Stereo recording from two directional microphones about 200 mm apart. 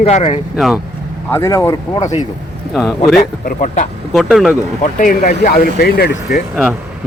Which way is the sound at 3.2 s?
40° left (ahead or behind).